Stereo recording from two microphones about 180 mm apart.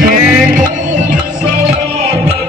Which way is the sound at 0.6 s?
45° right (ahead or behind).